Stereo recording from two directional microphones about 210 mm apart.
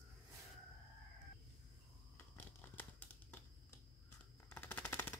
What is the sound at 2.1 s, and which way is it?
Crumpling, 10° left (ahead or behind).